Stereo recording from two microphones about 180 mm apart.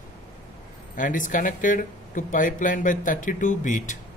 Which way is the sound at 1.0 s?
45° left (ahead or behind).